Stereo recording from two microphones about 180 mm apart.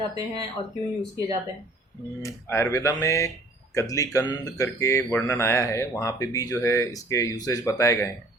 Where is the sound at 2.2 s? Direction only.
15° left (ahead or behind).